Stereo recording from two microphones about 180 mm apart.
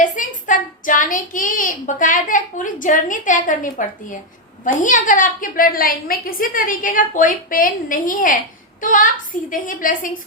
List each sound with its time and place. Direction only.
0.0 s speech: 45° left (ahead or behind)